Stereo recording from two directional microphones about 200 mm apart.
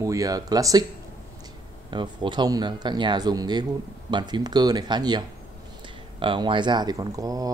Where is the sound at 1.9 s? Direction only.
20° right (ahead or behind).